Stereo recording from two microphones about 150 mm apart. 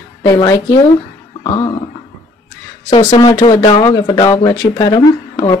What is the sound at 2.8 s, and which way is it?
Speech, 30° left (ahead or behind).